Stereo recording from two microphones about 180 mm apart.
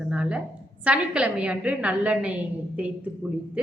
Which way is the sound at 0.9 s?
5° right (ahead or behind).